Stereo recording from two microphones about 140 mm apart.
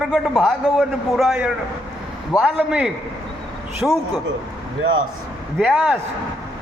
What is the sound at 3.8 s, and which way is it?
Speech, centre (ahead or behind).